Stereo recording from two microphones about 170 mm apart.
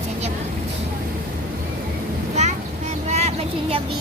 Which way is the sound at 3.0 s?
40° right (ahead or behind).